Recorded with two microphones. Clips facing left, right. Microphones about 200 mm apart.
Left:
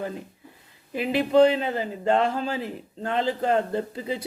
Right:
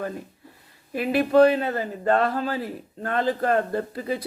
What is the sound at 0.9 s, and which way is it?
A man's voice, 20° left (ahead or behind).